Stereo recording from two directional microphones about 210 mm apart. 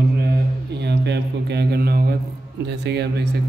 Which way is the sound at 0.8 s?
50° right (ahead or behind).